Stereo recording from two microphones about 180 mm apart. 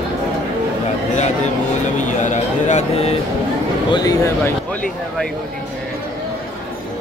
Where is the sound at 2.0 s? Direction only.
45° left (ahead or behind).